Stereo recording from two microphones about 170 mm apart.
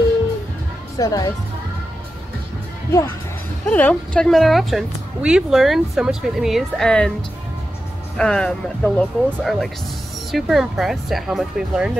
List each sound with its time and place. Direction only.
0.9 s speech: 20° left (ahead or behind)
3.6 s a woman's voice: 10° left (ahead or behind)
8.2 s a woman's voice: 5° left (ahead or behind)